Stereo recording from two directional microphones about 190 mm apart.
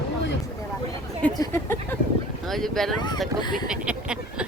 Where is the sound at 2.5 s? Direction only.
Centre (ahead or behind).